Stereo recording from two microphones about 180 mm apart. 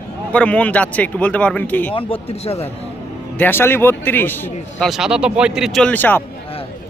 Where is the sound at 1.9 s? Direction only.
30° left (ahead or behind).